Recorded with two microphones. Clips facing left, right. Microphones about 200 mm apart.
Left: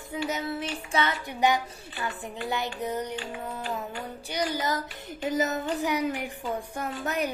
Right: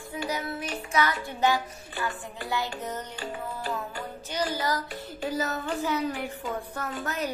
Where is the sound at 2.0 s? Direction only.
20° left (ahead or behind).